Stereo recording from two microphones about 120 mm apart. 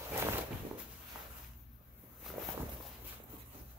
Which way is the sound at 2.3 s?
5° right (ahead or behind).